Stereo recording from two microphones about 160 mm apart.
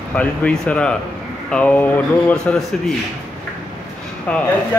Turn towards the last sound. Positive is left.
turn(degrees=5)  # may be behind; listen again after turning